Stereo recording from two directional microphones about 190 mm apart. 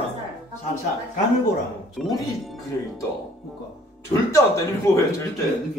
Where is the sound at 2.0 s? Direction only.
Centre (ahead or behind).